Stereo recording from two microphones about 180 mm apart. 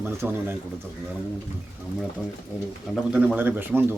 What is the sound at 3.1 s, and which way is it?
Speech, 10° right (ahead or behind).